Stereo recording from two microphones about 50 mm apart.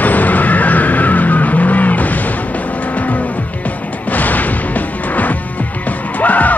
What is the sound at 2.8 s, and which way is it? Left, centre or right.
Vehicle, left.